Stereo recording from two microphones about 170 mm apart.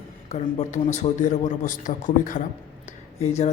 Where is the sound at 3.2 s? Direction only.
40° left (ahead or behind).